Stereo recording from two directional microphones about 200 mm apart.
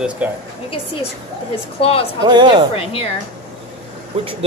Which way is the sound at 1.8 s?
30° left (ahead or behind).